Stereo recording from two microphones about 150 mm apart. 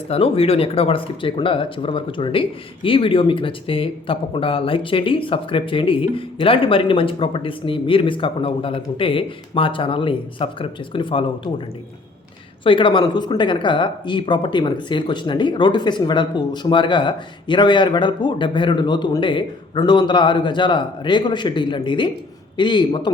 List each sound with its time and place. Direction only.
0.1 s speech: 40° left (ahead or behind)
12.6 s speech: 35° left (ahead or behind)